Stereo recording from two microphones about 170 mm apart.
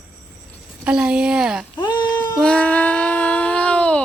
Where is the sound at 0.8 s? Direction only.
5° right (ahead or behind).